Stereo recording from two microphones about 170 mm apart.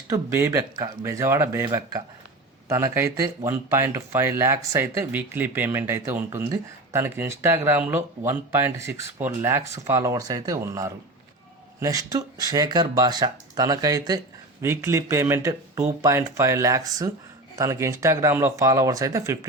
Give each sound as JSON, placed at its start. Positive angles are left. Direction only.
{"t": 0.1, "sound": "speech", "side_deg": -20}